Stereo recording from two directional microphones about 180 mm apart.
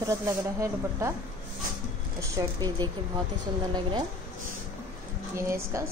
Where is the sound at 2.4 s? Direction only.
20° right (ahead or behind).